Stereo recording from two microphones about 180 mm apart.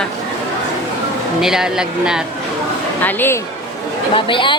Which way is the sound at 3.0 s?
10° left (ahead or behind).